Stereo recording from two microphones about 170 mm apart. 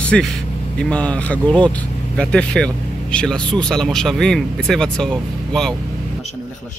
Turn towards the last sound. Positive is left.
turn(degrees=0)  # may be behind; listen again after turning